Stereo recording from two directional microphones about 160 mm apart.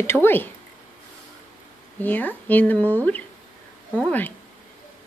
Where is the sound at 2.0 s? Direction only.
10° left (ahead or behind).